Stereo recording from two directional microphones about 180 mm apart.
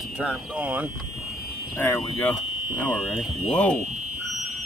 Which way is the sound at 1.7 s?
10° left (ahead or behind).